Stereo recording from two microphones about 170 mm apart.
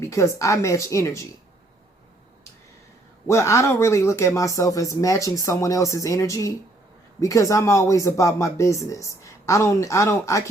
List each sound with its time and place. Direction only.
0.0 s speech: 15° left (ahead or behind)
3.2 s speech: 15° left (ahead or behind)